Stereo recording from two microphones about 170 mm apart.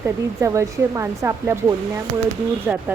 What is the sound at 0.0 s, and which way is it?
A woman's voice, 15° right (ahead or behind).